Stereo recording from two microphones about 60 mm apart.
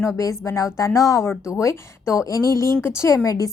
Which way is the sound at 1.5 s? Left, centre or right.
Left.